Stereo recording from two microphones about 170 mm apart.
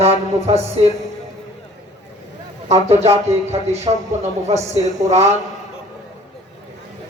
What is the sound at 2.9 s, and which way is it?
Music, 40° right (ahead or behind).